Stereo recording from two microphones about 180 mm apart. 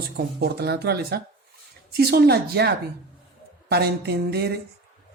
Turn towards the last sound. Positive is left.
turn(degrees=-65)  # may be behind; listen again after turning